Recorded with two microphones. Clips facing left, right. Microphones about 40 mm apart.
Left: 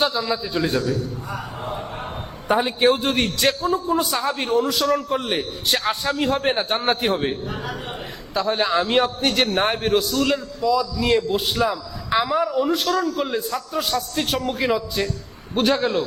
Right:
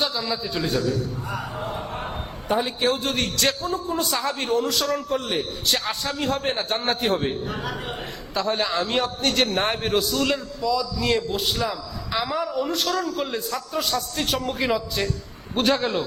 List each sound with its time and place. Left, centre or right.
0.2 s a man's voice: centre
2.6 s a man's voice: left; by 5.0 s centre
5.0 s a man's voice: centre
8.3 s a man's voice: centre
8.5 s a man's voice: centre